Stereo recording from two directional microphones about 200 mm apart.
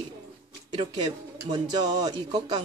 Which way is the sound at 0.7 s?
20° right (ahead or behind).